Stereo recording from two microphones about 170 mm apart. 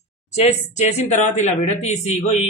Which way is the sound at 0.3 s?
45° left (ahead or behind).